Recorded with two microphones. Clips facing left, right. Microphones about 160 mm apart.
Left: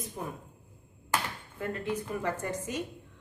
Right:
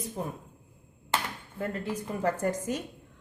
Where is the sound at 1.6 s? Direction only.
35° right (ahead or behind).